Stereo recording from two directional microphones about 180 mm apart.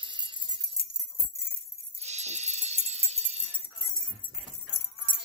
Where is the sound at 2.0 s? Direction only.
40° right (ahead or behind).